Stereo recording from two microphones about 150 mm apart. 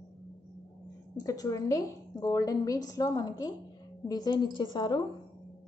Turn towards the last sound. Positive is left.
turn(degrees=30)  # may be behind; listen again after turning